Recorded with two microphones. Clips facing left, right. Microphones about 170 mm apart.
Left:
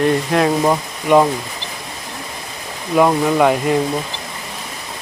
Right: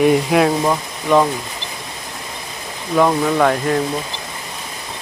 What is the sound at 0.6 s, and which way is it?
Speech, 15° left (ahead or behind).